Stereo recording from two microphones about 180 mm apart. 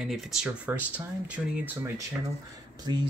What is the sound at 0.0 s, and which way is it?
Speech, centre (ahead or behind).